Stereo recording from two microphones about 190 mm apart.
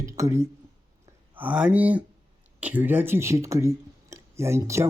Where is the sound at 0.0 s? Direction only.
15° right (ahead or behind).